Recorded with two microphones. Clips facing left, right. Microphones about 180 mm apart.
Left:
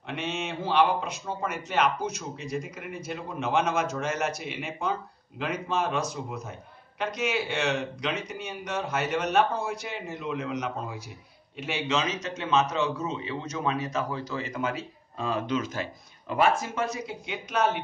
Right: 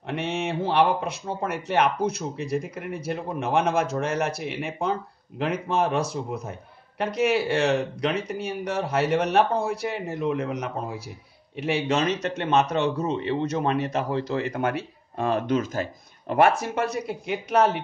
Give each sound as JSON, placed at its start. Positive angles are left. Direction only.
{"t": 0.0, "sound": "a man's voice", "side_deg": -60}